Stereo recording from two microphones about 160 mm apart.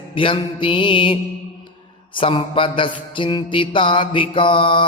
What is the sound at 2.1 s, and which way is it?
Mantra, 35° left (ahead or behind).